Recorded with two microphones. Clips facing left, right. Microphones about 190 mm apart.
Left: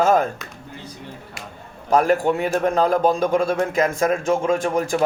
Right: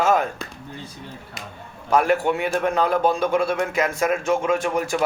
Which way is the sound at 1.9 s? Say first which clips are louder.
Left 2 dB; 40° left (ahead or behind).